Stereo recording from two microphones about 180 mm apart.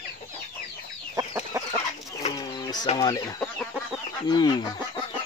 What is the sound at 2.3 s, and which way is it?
Bird, 20° left (ahead or behind).